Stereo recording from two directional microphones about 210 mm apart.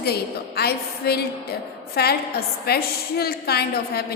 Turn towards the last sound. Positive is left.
turn(degrees=50)  # may be behind; listen again after turning